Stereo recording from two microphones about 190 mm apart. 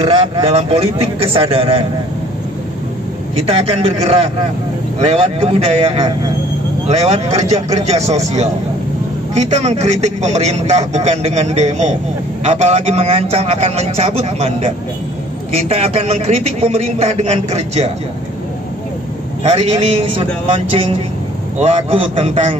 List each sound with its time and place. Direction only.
0.0 s a man's voice: 25° right (ahead or behind)
3.3 s a man's voice: 30° right (ahead or behind)
19.4 s a man's voice: 30° right (ahead or behind)
21.5 s a man's voice: 35° right (ahead or behind)